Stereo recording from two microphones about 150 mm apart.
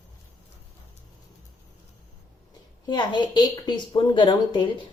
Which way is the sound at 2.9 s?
30° left (ahead or behind).